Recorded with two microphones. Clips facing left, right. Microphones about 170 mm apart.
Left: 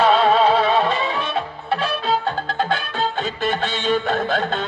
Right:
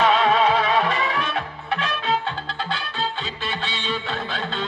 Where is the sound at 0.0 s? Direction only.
30° left (ahead or behind).